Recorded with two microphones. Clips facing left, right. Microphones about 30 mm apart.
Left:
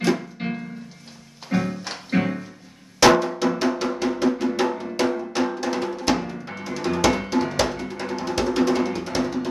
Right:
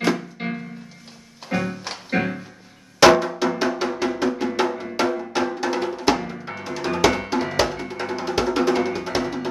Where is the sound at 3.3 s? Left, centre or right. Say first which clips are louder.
Even; centre.